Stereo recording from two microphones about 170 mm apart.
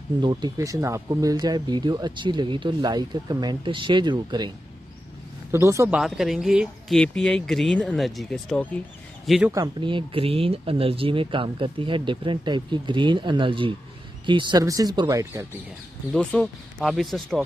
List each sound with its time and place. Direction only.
0.2 s speech: 25° right (ahead or behind)
5.5 s speech: 15° right (ahead or behind)
5.9 s speech: centre (ahead or behind)
9.8 s speech: 30° right (ahead or behind)
16.1 s speech: 5° left (ahead or behind)